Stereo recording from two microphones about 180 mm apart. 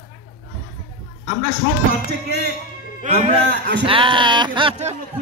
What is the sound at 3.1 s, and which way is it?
Speech, 40° right (ahead or behind).